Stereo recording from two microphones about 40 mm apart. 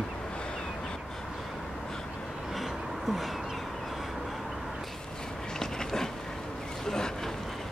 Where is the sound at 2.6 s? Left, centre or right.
Centre.